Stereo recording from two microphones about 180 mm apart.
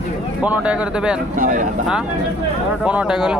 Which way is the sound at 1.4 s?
50° right (ahead or behind).